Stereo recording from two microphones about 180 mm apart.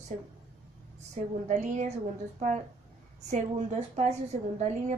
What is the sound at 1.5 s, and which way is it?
Speech, 40° right (ahead or behind).